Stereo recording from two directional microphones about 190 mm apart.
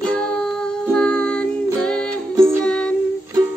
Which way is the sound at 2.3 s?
15° right (ahead or behind).